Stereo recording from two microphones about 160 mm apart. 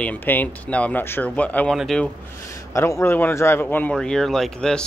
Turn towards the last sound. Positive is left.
turn(degrees=5)  # may be behind; listen again after turning